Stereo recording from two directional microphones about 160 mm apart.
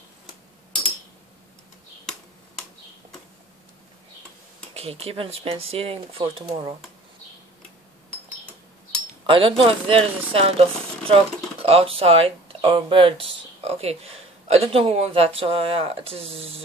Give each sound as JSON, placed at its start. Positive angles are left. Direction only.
{"t": 4.7, "sound": "speech", "side_deg": -40}
{"t": 9.2, "sound": "speech", "side_deg": -30}